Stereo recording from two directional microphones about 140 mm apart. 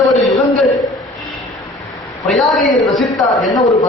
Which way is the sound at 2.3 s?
Centre (ahead or behind).